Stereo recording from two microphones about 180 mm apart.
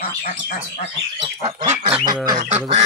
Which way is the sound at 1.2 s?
35° right (ahead or behind).